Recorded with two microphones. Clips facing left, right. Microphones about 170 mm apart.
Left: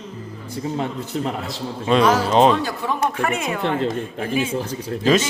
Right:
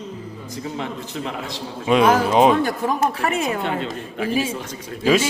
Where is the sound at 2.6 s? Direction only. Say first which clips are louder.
Right 4 dB; 55° right (ahead or behind).